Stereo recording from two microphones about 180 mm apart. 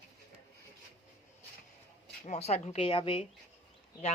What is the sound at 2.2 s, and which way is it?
Speech, 35° left (ahead or behind).